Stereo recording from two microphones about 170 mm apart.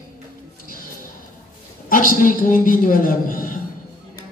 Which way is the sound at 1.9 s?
50° left (ahead or behind).